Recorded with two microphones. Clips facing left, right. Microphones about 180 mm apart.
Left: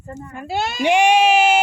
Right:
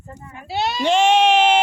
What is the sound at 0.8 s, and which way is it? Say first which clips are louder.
Speech: left 1 dB; 15° left (ahead or behind).